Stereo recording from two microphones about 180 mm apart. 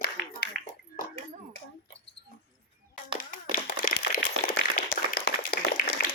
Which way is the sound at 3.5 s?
50° left (ahead or behind).